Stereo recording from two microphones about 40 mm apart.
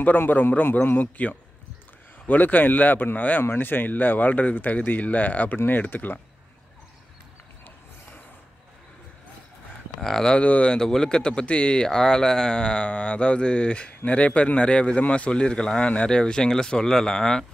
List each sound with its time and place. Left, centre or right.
0.3 s speech: left
3.5 s speech: left
9.9 s speech: centre
10.3 s speech: left
10.7 s speech: centre
16.1 s speech: centre